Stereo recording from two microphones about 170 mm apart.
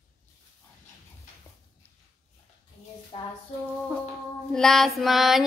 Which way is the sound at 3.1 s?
25° left (ahead or behind).